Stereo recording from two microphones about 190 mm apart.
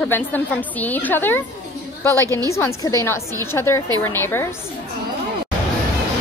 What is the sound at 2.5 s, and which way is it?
A woman's voice, 15° left (ahead or behind).